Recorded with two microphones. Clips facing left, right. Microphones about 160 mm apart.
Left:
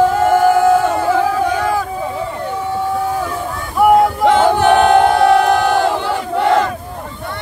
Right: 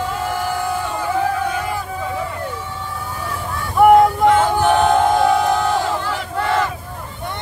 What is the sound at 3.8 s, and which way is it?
Vehicle, 5° left (ahead or behind).